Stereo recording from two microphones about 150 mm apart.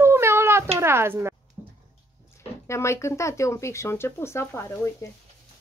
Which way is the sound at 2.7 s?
20° left (ahead or behind).